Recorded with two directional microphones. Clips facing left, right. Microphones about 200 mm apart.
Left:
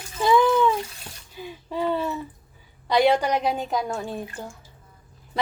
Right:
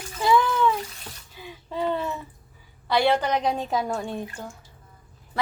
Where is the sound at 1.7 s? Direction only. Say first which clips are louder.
Left 1 dB; 10° left (ahead or behind).